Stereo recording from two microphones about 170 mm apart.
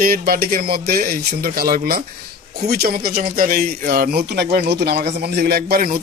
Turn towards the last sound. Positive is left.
turn(degrees=-60)  # may be behind; listen again after turning